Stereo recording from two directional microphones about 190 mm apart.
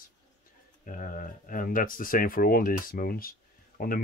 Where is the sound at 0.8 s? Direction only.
45° left (ahead or behind).